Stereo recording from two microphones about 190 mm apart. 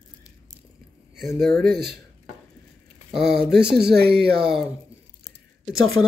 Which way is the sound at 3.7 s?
60° right (ahead or behind).